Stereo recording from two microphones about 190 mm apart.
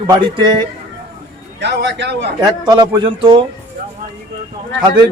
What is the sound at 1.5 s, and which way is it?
Speech, 65° right (ahead or behind).